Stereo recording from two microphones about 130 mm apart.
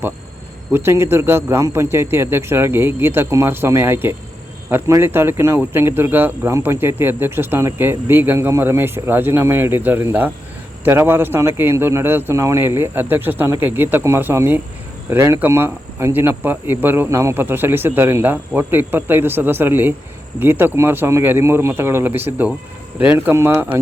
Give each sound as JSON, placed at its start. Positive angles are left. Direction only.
{"t": 0.7, "sound": "speech", "side_deg": -20}